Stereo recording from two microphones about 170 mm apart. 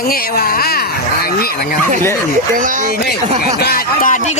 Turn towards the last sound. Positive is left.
turn(degrees=60)  # may be behind; listen again after turning